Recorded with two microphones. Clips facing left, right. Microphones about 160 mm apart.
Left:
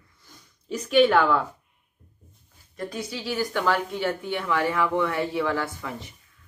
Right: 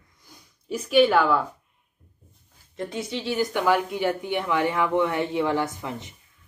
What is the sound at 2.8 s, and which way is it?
Speech, 25° right (ahead or behind).